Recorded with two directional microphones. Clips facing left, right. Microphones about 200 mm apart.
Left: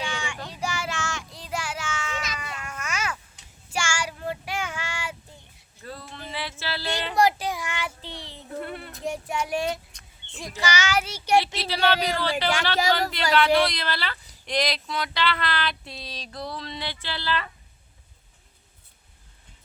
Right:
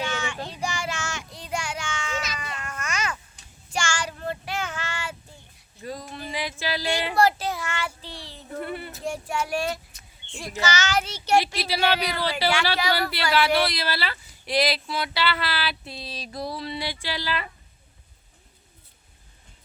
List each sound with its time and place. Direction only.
0.0 s child singing: 15° left (ahead or behind)
5.8 s music: 15° right (ahead or behind)
7.2 s child singing: 15° left (ahead or behind)
8.4 s a sound: centre (ahead or behind)
9.0 s a sound: 20° left (ahead or behind)
10.6 s a child's voice: 10° left (ahead or behind)
11.3 s speech: 10° right (ahead or behind)